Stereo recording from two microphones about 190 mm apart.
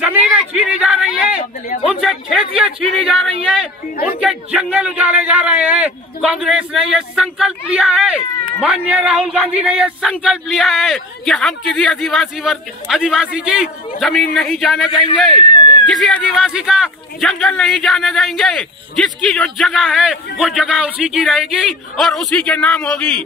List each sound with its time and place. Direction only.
0.0 s speech: 5° right (ahead or behind)
1.7 s speech: 50° left (ahead or behind)
2.6 s speech: centre (ahead or behind)
15.5 s a sound: 20° left (ahead or behind)
15.9 s speech: centre (ahead or behind)